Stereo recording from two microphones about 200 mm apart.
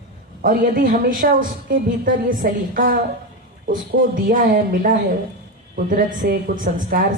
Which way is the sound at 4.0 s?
45° right (ahead or behind).